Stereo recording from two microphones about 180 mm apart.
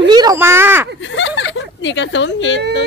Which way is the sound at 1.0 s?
90° left.